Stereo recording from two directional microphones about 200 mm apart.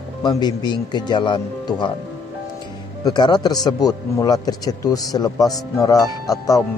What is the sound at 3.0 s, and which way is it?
Speech, 20° left (ahead or behind).